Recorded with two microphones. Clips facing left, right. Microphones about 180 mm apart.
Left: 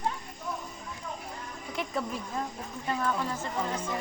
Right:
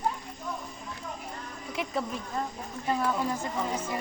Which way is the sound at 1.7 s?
Centre (ahead or behind).